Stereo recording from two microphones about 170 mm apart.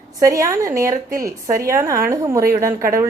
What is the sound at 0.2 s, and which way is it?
A woman's voice, 20° right (ahead or behind).